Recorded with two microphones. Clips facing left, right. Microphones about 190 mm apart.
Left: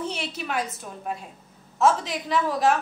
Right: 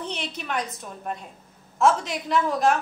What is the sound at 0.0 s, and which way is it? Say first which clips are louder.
A woman's voice: left 2 dB; 5° left (ahead or behind).